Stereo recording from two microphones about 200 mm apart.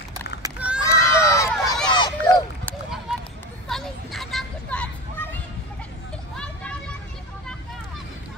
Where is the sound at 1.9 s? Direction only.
20° left (ahead or behind).